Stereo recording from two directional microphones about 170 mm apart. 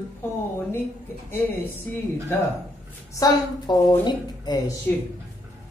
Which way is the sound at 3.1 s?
20° left (ahead or behind).